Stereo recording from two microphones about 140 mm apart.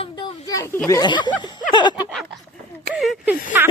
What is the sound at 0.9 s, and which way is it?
Speech, 30° left (ahead or behind).